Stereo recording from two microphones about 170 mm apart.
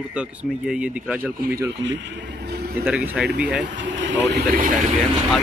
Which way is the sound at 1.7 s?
90° right.